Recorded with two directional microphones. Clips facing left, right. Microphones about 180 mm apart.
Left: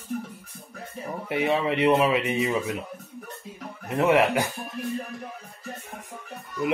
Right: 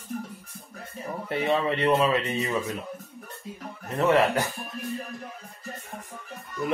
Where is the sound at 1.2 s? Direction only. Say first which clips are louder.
Left 1 dB; 10° left (ahead or behind).